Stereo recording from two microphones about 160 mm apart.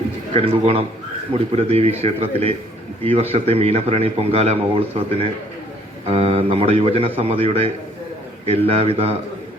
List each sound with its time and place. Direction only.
0.3 s a man's voice: 35° right (ahead or behind)